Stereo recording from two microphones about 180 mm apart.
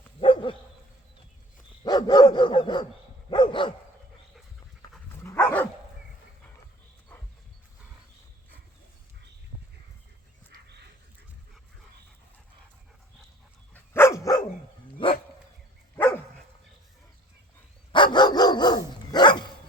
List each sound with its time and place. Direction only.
0.2 s dog: 30° left (ahead or behind)
1.8 s dog: 20° left (ahead or behind)
5.2 s dog: 15° left (ahead or behind)
9.5 s a sound: 10° right (ahead or behind)
10.5 s dog: 70° right (ahead or behind)
13.7 s dog: 15° left (ahead or behind)
16.0 s dog: 10° left (ahead or behind)
17.9 s dog: 25° left (ahead or behind)